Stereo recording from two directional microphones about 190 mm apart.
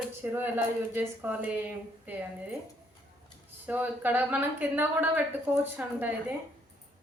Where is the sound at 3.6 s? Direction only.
10° right (ahead or behind).